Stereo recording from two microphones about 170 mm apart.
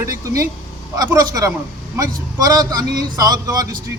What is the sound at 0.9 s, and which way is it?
A man's voice, 20° right (ahead or behind).